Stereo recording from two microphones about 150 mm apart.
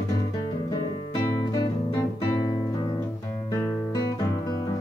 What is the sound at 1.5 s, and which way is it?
Guitar, 25° left (ahead or behind).